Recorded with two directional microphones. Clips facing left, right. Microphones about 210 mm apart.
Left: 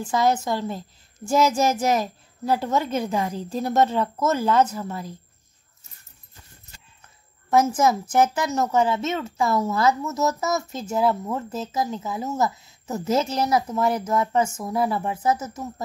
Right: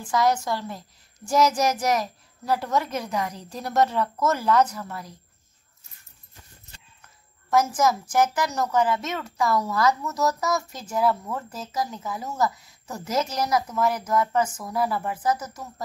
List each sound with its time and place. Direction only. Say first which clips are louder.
0.0 s a woman's voice: left 1 dB; 25° left (ahead or behind)
7.4 s a woman's voice: left 2 dB; 25° left (ahead or behind)